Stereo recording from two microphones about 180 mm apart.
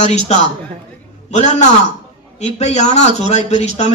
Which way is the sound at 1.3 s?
40° left (ahead or behind).